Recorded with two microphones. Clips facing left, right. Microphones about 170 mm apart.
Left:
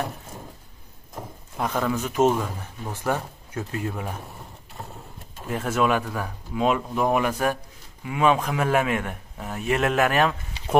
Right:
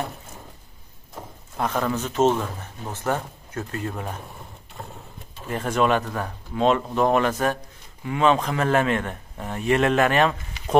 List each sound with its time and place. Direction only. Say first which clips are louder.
1.6 s speech: even; 5° left (ahead or behind)
5.5 s speech: right 1 dB; 5° left (ahead or behind)
10.6 s a sound: right 1 dB; 30° left (ahead or behind)